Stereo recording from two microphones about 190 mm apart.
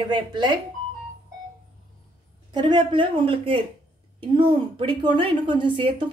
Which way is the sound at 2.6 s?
25° right (ahead or behind).